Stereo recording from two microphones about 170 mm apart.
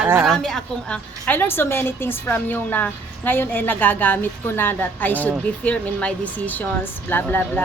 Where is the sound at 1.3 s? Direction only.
10° left (ahead or behind).